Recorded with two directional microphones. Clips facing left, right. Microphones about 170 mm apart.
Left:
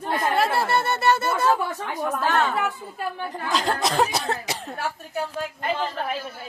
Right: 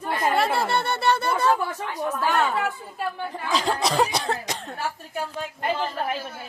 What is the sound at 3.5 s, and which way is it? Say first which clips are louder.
Cough: even; centre (ahead or behind).